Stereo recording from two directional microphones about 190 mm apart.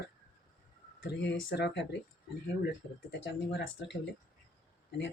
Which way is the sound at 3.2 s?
70° left (ahead or behind).